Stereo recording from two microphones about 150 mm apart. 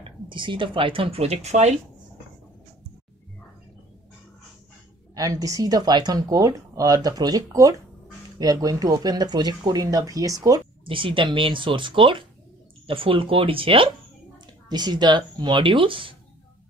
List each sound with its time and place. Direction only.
0.0 s speech: 35° right (ahead or behind); by 1.8 s 50° right (ahead or behind)
5.1 s speech: 25° right (ahead or behind)
10.9 s speech: 35° right (ahead or behind)